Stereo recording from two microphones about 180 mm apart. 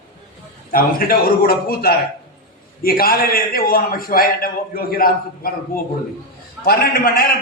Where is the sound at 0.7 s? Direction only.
55° left (ahead or behind).